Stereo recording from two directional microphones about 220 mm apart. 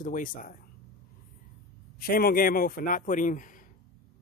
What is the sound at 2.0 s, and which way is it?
Speech, 40° left (ahead or behind).